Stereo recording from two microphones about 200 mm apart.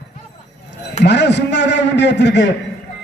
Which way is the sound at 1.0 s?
60° left (ahead or behind).